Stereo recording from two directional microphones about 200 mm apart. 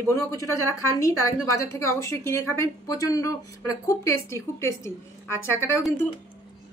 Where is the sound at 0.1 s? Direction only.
15° left (ahead or behind).